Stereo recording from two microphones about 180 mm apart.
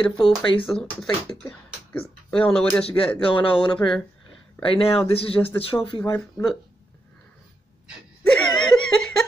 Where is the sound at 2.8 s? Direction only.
30° left (ahead or behind).